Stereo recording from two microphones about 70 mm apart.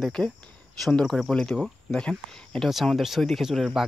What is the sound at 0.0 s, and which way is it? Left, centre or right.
Speech, centre.